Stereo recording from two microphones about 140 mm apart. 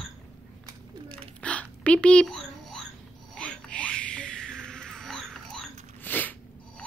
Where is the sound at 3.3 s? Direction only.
10° left (ahead or behind).